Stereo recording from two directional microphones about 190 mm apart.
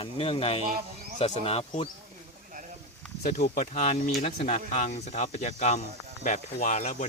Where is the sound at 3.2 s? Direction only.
40° left (ahead or behind).